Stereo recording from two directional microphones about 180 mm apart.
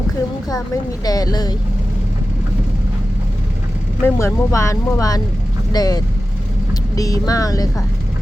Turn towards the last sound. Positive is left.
turn(degrees=20)  # may be behind; listen again after turning